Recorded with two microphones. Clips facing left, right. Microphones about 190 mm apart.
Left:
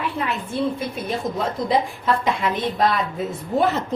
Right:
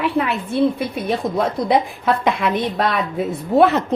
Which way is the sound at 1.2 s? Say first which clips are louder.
Right 4 dB; 65° right (ahead or behind).